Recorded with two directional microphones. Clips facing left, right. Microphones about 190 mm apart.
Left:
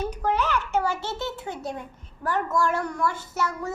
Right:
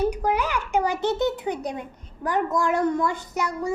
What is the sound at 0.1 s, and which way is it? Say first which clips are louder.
A child's voice: right 1 dB; 10° right (ahead or behind).